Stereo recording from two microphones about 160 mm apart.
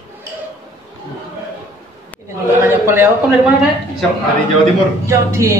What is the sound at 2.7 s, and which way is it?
Speech, 15° right (ahead or behind).